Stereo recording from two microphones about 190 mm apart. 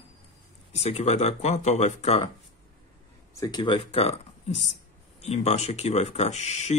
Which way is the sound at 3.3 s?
20° left (ahead or behind).